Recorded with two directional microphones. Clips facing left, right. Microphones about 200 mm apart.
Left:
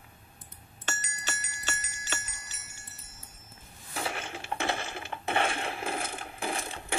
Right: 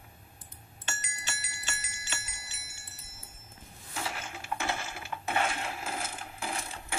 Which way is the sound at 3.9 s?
25° left (ahead or behind).